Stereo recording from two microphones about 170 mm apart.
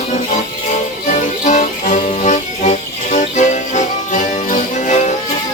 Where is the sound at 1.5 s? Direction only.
45° left (ahead or behind).